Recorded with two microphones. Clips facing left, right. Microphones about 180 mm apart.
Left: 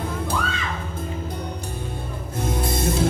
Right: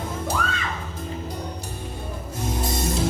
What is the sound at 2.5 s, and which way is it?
Music, 55° left (ahead or behind).